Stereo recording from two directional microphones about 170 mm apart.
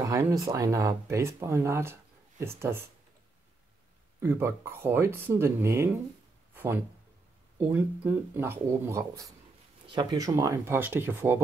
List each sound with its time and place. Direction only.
0.0 s speech: 20° right (ahead or behind)
4.2 s speech: 15° right (ahead or behind)
6.5 s a sound: 10° right (ahead or behind)
7.6 s speech: 10° right (ahead or behind)